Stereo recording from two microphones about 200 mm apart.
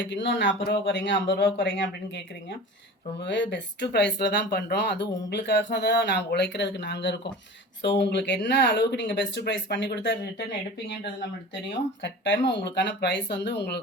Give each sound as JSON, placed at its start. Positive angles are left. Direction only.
{"t": 0.0, "sound": "speech", "side_deg": 60}
{"t": 12.0, "sound": "speech", "side_deg": 65}